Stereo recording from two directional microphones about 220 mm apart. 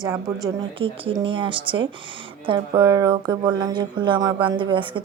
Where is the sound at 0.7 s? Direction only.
25° right (ahead or behind).